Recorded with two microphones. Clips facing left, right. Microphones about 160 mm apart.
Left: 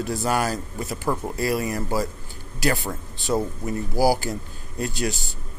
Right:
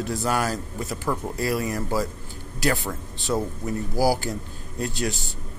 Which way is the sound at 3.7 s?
5° left (ahead or behind).